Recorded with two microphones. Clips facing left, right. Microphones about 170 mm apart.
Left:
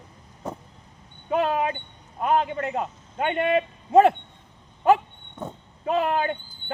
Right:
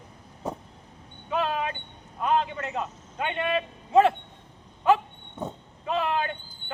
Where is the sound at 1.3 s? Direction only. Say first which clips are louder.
Left 5 dB; 50° left (ahead or behind).